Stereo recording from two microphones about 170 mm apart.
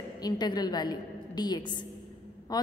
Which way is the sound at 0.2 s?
25° left (ahead or behind).